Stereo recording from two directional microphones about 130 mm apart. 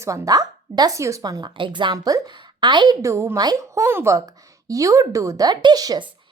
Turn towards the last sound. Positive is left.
turn(degrees=-30)  # may be behind; listen again after turning